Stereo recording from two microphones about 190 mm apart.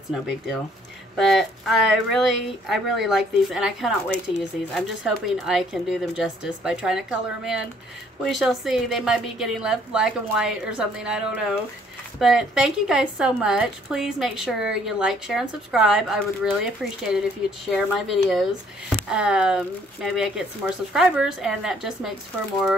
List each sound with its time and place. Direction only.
0.1 s a woman's voice: 5° right (ahead or behind)